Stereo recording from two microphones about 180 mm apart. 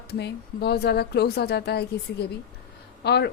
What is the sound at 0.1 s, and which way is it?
Speech, 65° left (ahead or behind).